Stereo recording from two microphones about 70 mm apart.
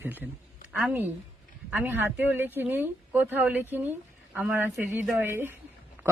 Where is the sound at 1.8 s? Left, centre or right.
Right.